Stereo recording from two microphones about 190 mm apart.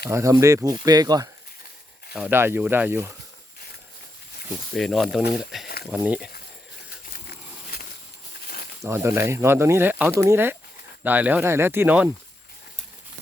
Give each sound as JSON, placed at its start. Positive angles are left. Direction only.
{"t": 0.1, "sound": "speech", "side_deg": -15}
{"t": 2.1, "sound": "speech", "side_deg": -5}
{"t": 4.7, "sound": "speech", "side_deg": 0}
{"t": 7.1, "sound": "insect", "side_deg": 50}
{"t": 8.8, "sound": "speech", "side_deg": -15}